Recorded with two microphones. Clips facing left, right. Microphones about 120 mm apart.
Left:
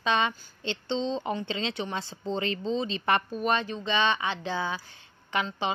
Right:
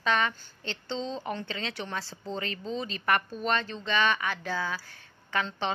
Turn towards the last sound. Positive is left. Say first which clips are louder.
# left 1 dB
turn(degrees=15)  # may be behind; listen again after turning